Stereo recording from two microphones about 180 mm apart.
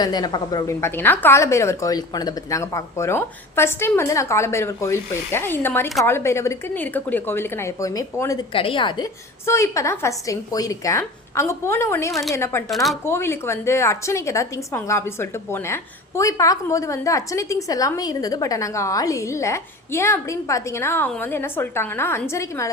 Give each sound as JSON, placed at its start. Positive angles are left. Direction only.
{"t": 0.0, "sound": "a woman's voice", "side_deg": 20}
{"t": 8.5, "sound": "a woman's voice", "side_deg": 30}
{"t": 12.6, "sound": "speech", "side_deg": 0}
{"t": 13.1, "sound": "a woman's voice", "side_deg": 15}